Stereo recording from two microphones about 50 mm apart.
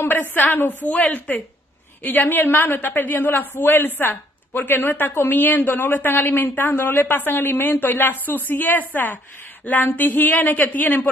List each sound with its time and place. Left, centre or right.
0.0 s a woman's voice: left
2.0 s speech: left